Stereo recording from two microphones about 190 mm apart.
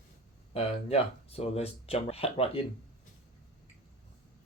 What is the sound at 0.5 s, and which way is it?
Speech, 30° left (ahead or behind).